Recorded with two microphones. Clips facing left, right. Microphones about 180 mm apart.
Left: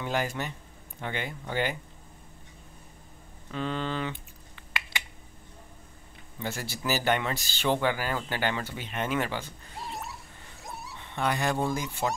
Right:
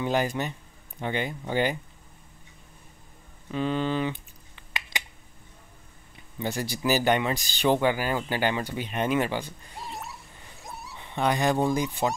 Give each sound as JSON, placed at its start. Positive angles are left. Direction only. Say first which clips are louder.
{"t": 0.0, "sound": "speech", "louder": "right 4 dB", "side_deg": -20}
{"t": 3.5, "sound": "speech", "louder": "right 5 dB", "side_deg": -15}
{"t": 4.7, "sound": "finger snapping", "louder": "right 1 dB", "side_deg": -15}
{"t": 6.4, "sound": "speech", "louder": "right 5 dB", "side_deg": -15}
{"t": 9.8, "sound": "a sound", "louder": "even", "side_deg": 0}
{"t": 11.0, "sound": "speech", "louder": "right 4 dB", "side_deg": -15}